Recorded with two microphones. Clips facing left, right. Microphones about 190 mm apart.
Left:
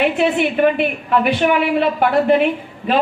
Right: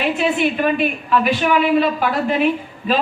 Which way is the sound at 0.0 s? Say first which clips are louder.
Left 2 dB; 60° left (ahead or behind).